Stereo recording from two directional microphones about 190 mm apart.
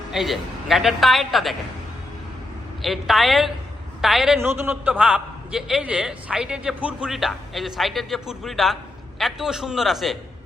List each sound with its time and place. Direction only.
0.1 s a man's voice: centre (ahead or behind)
2.8 s a man's voice: centre (ahead or behind)